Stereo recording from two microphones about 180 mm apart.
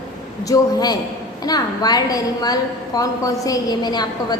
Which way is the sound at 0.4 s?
20° left (ahead or behind).